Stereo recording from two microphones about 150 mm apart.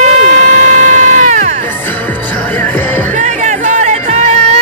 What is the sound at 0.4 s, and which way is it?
Music, 55° right (ahead or behind).